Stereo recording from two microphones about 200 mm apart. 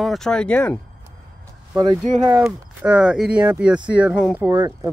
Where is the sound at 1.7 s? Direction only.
20° right (ahead or behind).